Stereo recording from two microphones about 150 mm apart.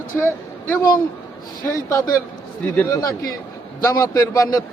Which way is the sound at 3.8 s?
20° left (ahead or behind).